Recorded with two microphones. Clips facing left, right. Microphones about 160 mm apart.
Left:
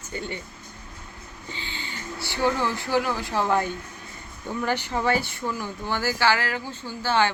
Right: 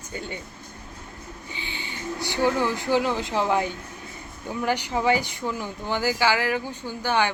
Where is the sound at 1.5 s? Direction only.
15° right (ahead or behind).